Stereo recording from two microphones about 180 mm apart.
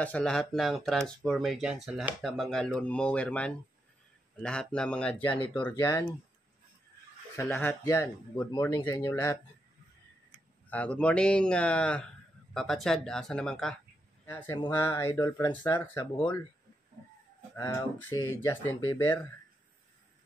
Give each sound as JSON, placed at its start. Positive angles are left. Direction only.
{"t": 0.0, "sound": "speech", "side_deg": 5}
{"t": 5.3, "sound": "speech", "side_deg": 30}
{"t": 5.6, "sound": "speech", "side_deg": 15}
{"t": 7.3, "sound": "speech", "side_deg": 15}
{"t": 10.7, "sound": "speech", "side_deg": 5}
{"t": 17.6, "sound": "speech", "side_deg": 15}